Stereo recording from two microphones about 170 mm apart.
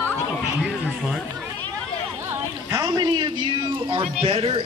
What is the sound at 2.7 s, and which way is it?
A man's voice, 20° right (ahead or behind).